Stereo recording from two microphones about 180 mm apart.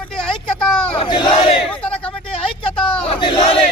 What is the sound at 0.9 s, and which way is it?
Battle cry, 25° left (ahead or behind).